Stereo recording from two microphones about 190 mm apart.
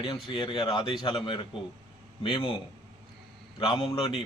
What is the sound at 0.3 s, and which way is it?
Speech, 25° left (ahead or behind).